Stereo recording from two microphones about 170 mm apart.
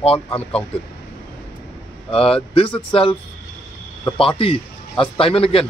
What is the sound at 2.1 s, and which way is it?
Speech, 35° left (ahead or behind).